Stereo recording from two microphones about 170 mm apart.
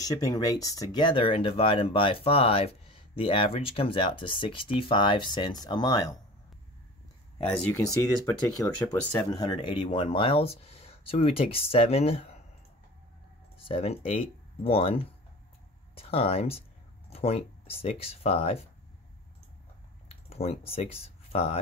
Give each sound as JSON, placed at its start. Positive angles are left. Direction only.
{"t": 0.0, "sound": "speech", "side_deg": 20}
{"t": 7.4, "sound": "speech", "side_deg": 10}
{"t": 8.8, "sound": "speech", "side_deg": 25}
{"t": 13.6, "sound": "speech", "side_deg": 35}
{"t": 20.2, "sound": "speech", "side_deg": 35}